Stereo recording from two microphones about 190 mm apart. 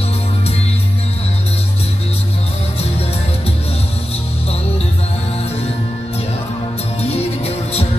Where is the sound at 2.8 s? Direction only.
30° left (ahead or behind).